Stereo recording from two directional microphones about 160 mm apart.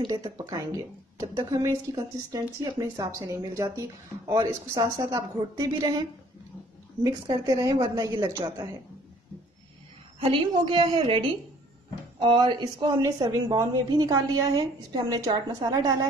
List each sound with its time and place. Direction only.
0.0 s a woman's voice: 20° right (ahead or behind)
10.2 s a woman's voice: 30° right (ahead or behind)